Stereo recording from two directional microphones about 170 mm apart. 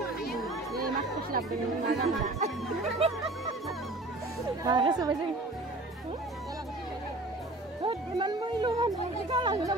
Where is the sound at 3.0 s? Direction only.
35° right (ahead or behind).